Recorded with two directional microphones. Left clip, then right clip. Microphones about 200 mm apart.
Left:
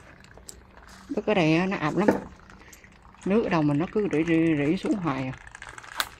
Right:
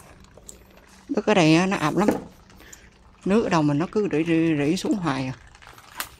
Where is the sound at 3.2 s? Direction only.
25° right (ahead or behind).